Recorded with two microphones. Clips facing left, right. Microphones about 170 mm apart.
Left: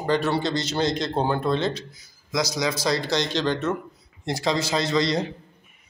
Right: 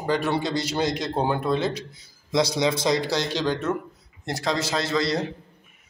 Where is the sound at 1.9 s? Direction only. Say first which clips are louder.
Right 3 dB; 25° right (ahead or behind).